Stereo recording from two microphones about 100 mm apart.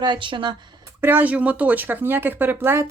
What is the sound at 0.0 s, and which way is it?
Speech, 50° right (ahead or behind).